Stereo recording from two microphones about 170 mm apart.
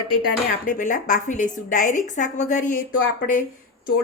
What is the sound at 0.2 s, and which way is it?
Speech, 50° left (ahead or behind).